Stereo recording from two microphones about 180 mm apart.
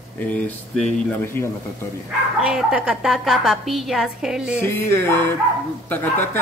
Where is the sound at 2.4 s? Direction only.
5° right (ahead or behind).